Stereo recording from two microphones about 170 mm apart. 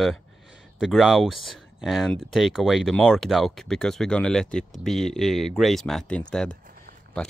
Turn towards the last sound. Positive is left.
turn(degrees=5)  # may be behind; listen again after turning